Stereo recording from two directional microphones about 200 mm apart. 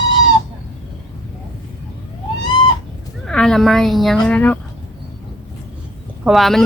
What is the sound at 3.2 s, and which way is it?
Speech, 5° left (ahead or behind).